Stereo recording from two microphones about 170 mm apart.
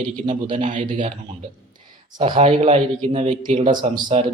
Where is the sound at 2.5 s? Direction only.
35° right (ahead or behind).